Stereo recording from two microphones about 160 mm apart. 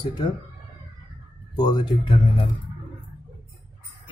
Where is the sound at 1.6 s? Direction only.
30° left (ahead or behind).